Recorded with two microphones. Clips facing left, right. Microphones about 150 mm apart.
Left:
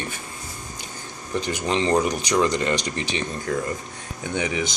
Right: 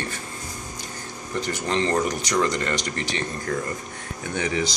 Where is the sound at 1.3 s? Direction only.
15° left (ahead or behind).